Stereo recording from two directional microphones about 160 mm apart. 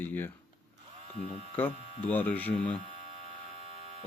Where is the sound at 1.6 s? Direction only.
10° left (ahead or behind).